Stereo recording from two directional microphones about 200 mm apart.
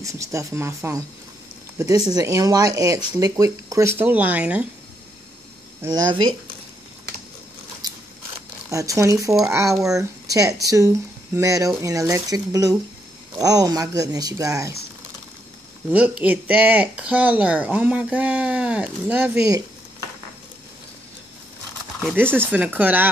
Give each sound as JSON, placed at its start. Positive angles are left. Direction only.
{"t": 0.0, "sound": "speech", "side_deg": -15}
{"t": 5.8, "sound": "speech", "side_deg": -20}
{"t": 7.8, "sound": "scissors", "side_deg": -20}
{"t": 8.6, "sound": "speech", "side_deg": -15}
{"t": 15.9, "sound": "speech", "side_deg": -10}
{"t": 22.0, "sound": "speech", "side_deg": -10}